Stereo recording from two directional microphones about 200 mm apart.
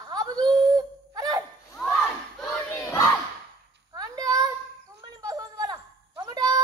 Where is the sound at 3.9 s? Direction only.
20° right (ahead or behind).